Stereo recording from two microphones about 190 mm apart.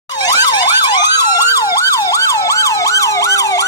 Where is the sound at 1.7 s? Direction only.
15° left (ahead or behind).